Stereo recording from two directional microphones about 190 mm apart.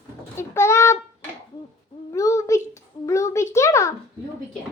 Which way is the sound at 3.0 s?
15° left (ahead or behind).